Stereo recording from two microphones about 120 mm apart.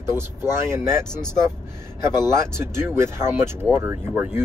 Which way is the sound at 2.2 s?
20° right (ahead or behind).